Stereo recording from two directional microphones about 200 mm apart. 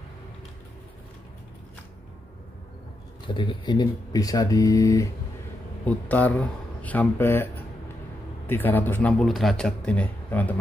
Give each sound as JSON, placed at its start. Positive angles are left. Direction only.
{"t": 3.3, "sound": "a man's voice", "side_deg": 25}